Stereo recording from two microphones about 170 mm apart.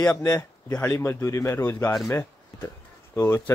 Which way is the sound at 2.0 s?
15° left (ahead or behind).